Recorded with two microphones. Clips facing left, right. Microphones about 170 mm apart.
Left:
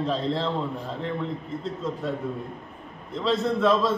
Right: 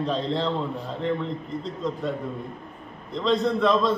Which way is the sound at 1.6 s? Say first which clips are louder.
Right 1 dB; 5° left (ahead or behind).